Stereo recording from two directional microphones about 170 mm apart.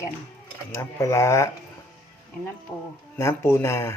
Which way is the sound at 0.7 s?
15° left (ahead or behind).